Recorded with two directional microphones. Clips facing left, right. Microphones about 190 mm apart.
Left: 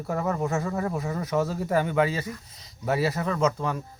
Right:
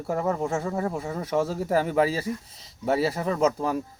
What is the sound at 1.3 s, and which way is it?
Speech, 5° right (ahead or behind).